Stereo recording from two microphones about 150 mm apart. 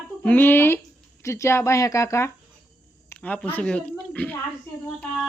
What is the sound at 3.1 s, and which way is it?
A woman's voice, 10° left (ahead or behind).